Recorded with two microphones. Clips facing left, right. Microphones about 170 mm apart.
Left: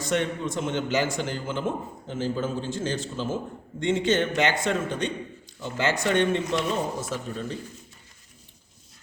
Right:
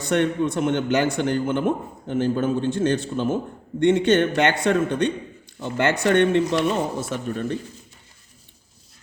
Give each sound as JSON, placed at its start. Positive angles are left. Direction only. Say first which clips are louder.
{"t": 0.0, "sound": "a man's voice", "louder": "right 6 dB", "side_deg": -60}